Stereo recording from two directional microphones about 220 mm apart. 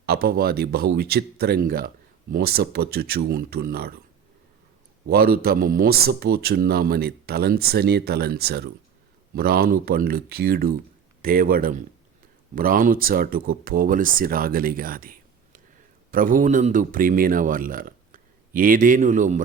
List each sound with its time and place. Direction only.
0.0 s speech: 45° right (ahead or behind)
5.0 s a man's voice: 45° right (ahead or behind)